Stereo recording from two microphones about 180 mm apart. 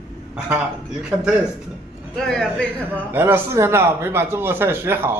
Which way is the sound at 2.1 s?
5° left (ahead or behind).